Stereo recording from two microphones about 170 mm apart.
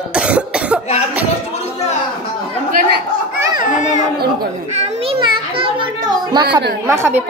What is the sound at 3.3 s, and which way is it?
Speech, 20° right (ahead or behind).